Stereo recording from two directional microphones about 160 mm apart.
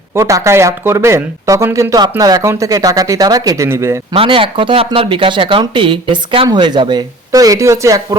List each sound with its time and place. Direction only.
0.1 s speech: 20° right (ahead or behind)
4.1 s speech: 35° right (ahead or behind)